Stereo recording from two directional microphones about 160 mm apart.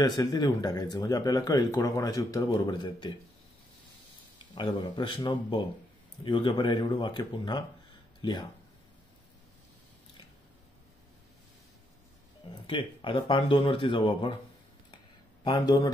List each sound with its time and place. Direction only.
0.0 s speech: 25° left (ahead or behind)
4.6 s speech: 30° left (ahead or behind)
12.6 s speech: 30° left (ahead or behind)
15.4 s speech: 30° left (ahead or behind)